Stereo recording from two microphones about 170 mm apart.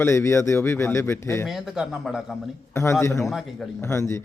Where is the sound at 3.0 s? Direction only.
15° left (ahead or behind).